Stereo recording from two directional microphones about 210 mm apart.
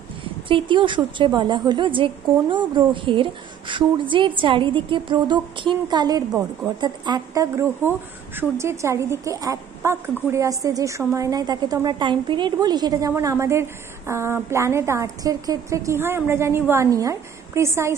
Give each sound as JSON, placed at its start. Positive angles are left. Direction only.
{"t": 0.2, "sound": "a woman's voice", "side_deg": -25}